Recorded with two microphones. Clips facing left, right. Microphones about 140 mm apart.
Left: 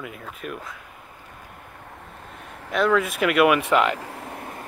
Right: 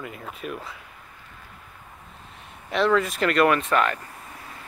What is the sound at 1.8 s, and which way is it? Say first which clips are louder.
Vehicle: left 5 dB; 60° left (ahead or behind).